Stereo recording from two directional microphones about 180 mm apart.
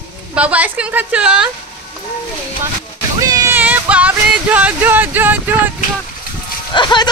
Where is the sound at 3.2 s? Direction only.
20° right (ahead or behind).